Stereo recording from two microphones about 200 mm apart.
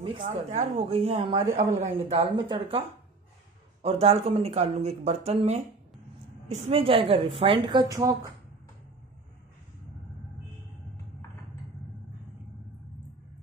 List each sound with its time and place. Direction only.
0.0 s speech: 30° right (ahead or behind)
1.5 s speech: 40° right (ahead or behind)
2.1 s a woman's voice: 25° right (ahead or behind)
3.8 s a woman's voice: 30° right (ahead or behind)